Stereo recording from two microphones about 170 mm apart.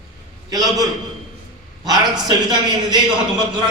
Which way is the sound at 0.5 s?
20° right (ahead or behind).